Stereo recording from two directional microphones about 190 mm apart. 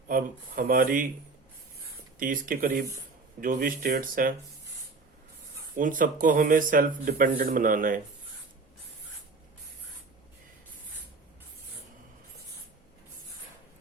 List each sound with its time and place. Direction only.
0.1 s speech: 50° right (ahead or behind)
2.1 s speech: 45° right (ahead or behind)
5.7 s speech: 45° right (ahead or behind)